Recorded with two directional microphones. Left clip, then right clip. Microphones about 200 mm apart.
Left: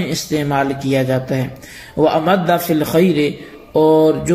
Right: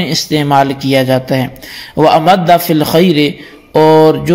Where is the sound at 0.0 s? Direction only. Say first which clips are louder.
Right 6 dB; 40° right (ahead or behind).